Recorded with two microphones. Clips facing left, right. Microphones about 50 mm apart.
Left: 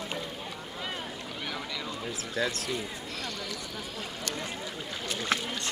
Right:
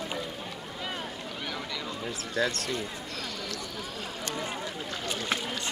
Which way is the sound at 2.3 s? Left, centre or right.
Centre.